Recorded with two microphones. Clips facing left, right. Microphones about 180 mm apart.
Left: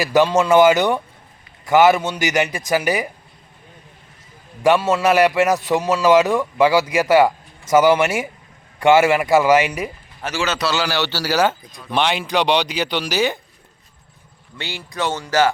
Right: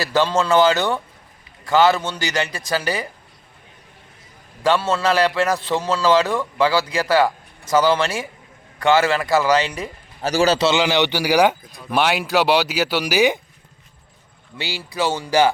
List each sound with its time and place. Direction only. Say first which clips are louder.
0.0 s a man's voice: left 3 dB; 15° left (ahead or behind)
4.6 s a man's voice: left 3 dB; 15° left (ahead or behind)
10.2 s a man's voice: right 6 dB; 35° right (ahead or behind); by 13.4 s 10° right (ahead or behind)
14.6 s speech: right 2 dB; 10° right (ahead or behind)